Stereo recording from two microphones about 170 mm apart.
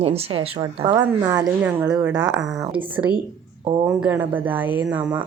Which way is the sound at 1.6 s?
10° right (ahead or behind).